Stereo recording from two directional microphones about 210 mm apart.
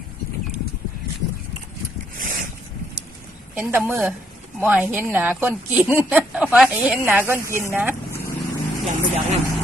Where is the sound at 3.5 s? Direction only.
5° right (ahead or behind).